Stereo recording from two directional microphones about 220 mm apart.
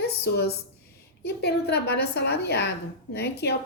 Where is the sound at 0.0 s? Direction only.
45° left (ahead or behind).